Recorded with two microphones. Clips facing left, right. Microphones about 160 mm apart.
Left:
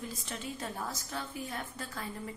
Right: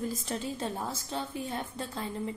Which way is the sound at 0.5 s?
25° right (ahead or behind).